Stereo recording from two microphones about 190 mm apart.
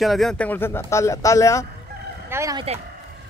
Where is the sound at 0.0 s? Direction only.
Centre (ahead or behind); by 1.7 s 15° left (ahead or behind).